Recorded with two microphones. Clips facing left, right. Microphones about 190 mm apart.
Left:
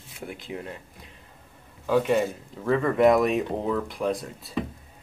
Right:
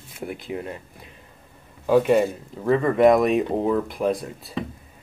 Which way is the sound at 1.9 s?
40° right (ahead or behind).